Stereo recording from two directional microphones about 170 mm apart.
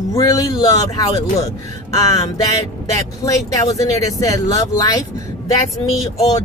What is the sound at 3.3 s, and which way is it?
Speech, 20° left (ahead or behind).